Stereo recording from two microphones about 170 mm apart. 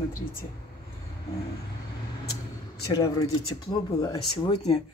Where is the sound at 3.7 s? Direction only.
20° left (ahead or behind).